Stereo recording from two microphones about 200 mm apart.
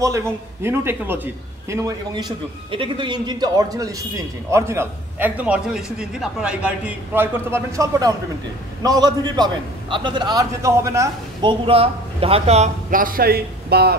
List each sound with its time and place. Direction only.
0.0 s a man's voice: 15° right (ahead or behind)
11.6 s a man's voice: 30° right (ahead or behind); by 13.9 s 55° right (ahead or behind)